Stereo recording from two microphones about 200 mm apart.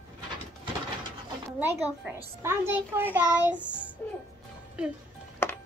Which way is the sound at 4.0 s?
10° left (ahead or behind).